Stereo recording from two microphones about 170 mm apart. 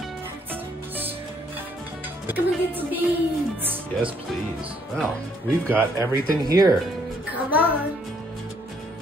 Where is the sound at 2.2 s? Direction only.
10° right (ahead or behind).